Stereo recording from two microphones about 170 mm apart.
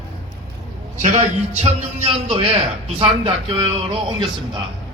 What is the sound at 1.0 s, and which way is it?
A man's voice, 45° right (ahead or behind).